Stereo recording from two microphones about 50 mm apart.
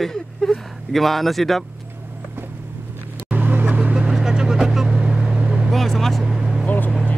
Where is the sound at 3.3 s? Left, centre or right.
Right.